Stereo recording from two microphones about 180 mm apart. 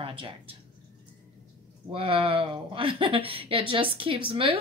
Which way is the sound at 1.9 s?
30° right (ahead or behind).